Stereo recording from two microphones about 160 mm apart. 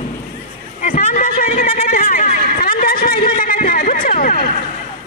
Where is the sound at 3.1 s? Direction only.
30° left (ahead or behind).